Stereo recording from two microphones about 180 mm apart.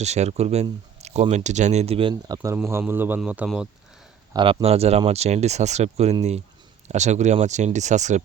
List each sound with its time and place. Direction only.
0.0 s speech: 40° right (ahead or behind); by 3.7 s 5° right (ahead or behind)
4.4 s speech: 30° right (ahead or behind)